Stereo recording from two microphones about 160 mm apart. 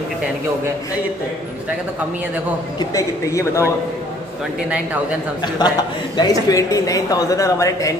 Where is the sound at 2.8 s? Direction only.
20° left (ahead or behind).